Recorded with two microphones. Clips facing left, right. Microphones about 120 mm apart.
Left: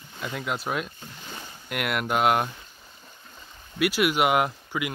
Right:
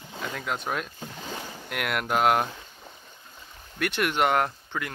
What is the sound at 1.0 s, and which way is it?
Boat, 80° right.